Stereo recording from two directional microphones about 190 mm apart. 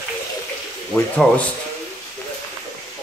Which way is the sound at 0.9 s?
5° left (ahead or behind).